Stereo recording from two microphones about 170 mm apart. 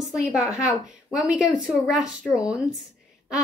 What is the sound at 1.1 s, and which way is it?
Speech, 5° right (ahead or behind).